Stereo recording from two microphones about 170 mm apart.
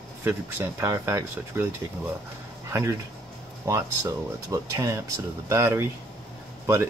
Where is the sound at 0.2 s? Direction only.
15° right (ahead or behind).